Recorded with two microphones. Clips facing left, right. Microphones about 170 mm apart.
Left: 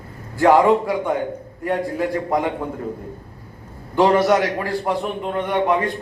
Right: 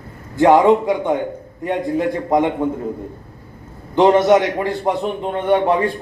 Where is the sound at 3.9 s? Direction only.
20° right (ahead or behind).